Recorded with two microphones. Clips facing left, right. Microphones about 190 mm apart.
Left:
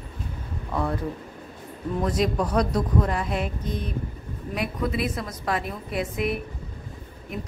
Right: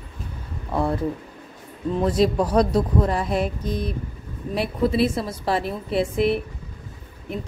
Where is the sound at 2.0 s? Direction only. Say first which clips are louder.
Right 5 dB; 30° right (ahead or behind).